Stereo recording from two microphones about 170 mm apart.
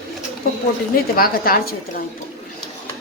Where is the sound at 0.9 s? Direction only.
60° left (ahead or behind).